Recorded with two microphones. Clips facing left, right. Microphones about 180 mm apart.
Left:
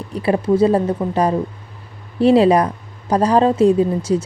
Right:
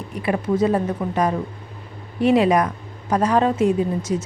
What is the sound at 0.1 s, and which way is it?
A woman's voice, 30° left (ahead or behind).